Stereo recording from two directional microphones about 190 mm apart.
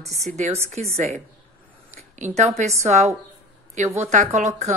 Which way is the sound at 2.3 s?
35° right (ahead or behind).